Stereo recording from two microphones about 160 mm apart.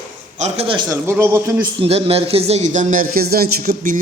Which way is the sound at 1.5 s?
30° right (ahead or behind).